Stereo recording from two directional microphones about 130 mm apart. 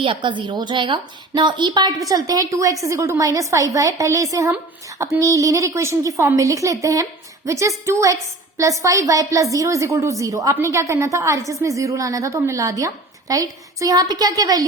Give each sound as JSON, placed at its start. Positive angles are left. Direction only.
{"t": 0.0, "sound": "a woman's voice", "side_deg": -40}